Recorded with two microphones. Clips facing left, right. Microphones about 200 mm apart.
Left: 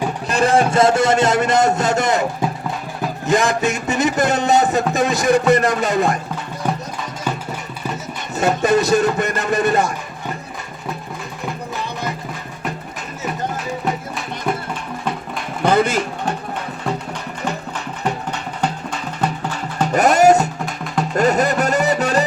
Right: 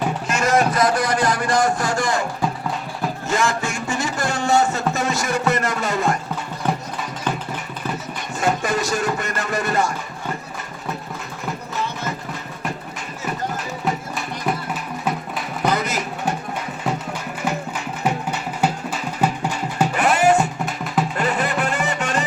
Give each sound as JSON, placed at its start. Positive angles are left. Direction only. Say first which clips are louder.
{"t": 0.3, "sound": "a man's voice", "louder": "left 4 dB", "side_deg": 30}
{"t": 3.2, "sound": "a man's voice", "louder": "left 6 dB", "side_deg": 15}
{"t": 6.6, "sound": "music", "louder": "left 1 dB", "side_deg": 10}
{"t": 8.6, "sound": "a man's voice", "louder": "left 7 dB", "side_deg": 20}
{"t": 14.2, "sound": "music", "louder": "left 1 dB", "side_deg": -5}
{"t": 15.6, "sound": "speech", "louder": "left 6 dB", "side_deg": 30}
{"t": 18.0, "sound": "music", "louder": "right 1 dB", "side_deg": -10}
{"t": 19.9, "sound": "music", "louder": "left 6 dB", "side_deg": 40}
{"t": 20.7, "sound": "music", "louder": "right 1 dB", "side_deg": -5}
{"t": 21.2, "sound": "music", "louder": "left 6 dB", "side_deg": 40}